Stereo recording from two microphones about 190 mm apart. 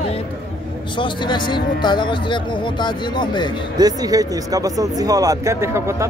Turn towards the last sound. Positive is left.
turn(degrees=-15)  # may be behind; listen again after turning